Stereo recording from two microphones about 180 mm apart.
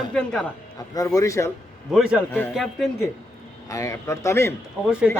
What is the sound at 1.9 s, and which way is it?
Speech, 5° right (ahead or behind).